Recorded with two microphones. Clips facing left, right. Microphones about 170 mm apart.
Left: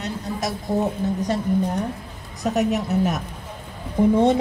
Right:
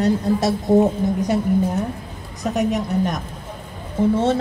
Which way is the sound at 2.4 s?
Centre (ahead or behind).